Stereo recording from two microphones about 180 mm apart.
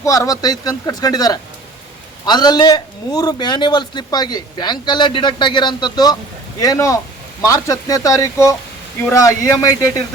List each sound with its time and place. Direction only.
0.0 s a man's voice: 20° left (ahead or behind)